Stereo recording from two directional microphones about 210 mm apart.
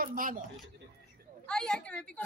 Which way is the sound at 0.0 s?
40° right (ahead or behind).